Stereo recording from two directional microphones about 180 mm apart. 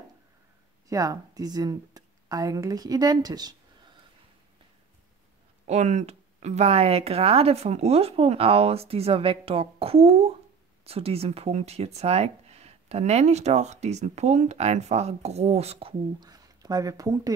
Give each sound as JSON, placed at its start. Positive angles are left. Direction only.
{"t": 0.8, "sound": "speech", "side_deg": -20}
{"t": 5.7, "sound": "speech", "side_deg": -40}
{"t": 16.2, "sound": "speech", "side_deg": -20}